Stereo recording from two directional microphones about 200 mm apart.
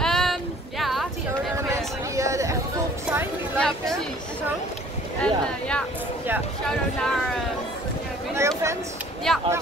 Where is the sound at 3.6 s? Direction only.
Centre (ahead or behind).